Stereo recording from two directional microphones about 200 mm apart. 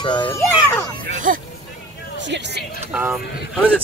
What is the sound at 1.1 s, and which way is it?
Speech, 40° right (ahead or behind).